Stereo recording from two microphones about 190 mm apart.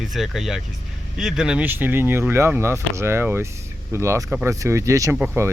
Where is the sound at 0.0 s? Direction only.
Centre (ahead or behind).